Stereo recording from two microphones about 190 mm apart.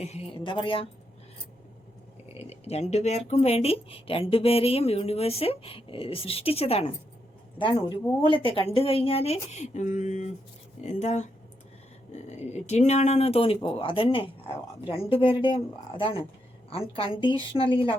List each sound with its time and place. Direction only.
0.0 s speech: 30° left (ahead or behind)
2.4 s speech: 35° left (ahead or behind)